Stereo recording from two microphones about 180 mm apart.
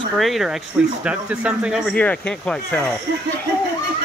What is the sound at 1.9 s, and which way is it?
Speech, 5° left (ahead or behind).